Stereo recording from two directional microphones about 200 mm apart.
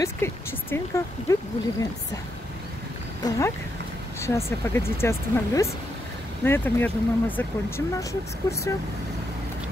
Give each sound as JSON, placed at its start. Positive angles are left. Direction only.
{"t": 0.0, "sound": "speech", "side_deg": 15}
{"t": 3.3, "sound": "speech", "side_deg": 15}